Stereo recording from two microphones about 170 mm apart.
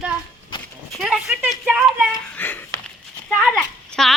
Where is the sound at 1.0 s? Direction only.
Centre (ahead or behind).